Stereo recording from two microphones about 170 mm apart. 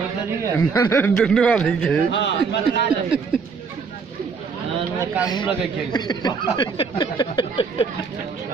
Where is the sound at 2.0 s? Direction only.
90° left.